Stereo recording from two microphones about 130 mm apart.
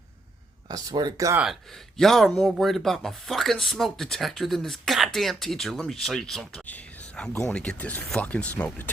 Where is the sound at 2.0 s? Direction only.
Centre (ahead or behind).